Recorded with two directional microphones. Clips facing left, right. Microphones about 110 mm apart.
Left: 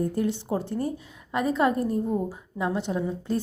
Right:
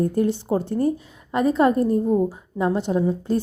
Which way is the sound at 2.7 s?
40° right (ahead or behind).